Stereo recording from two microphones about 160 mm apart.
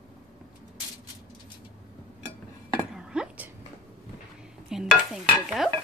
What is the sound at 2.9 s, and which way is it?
Dishes, 5° right (ahead or behind).